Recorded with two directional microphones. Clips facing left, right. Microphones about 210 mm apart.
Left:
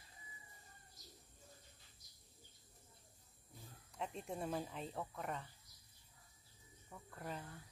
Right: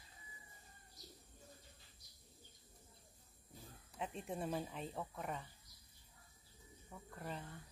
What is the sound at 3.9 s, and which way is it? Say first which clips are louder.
Speech: right 1 dB; centre (ahead or behind).